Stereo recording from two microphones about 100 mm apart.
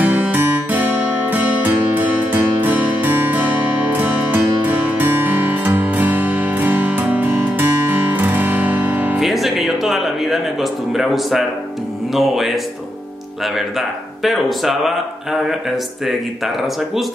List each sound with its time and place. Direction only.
0.0 s music: 15° right (ahead or behind)
9.1 s music: centre (ahead or behind)
12.1 s speech: centre (ahead or behind)
13.6 s speech: centre (ahead or behind)